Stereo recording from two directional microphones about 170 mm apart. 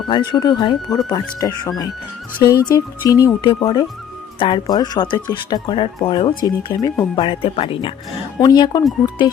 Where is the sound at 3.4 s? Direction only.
35° left (ahead or behind).